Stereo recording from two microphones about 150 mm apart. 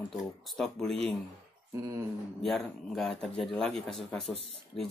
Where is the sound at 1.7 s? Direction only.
20° right (ahead or behind).